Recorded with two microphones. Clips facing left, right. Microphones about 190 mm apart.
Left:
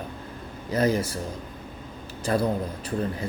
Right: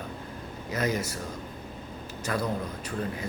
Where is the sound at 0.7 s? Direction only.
30° left (ahead or behind).